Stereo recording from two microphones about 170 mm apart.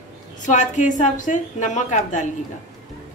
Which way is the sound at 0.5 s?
45° left (ahead or behind).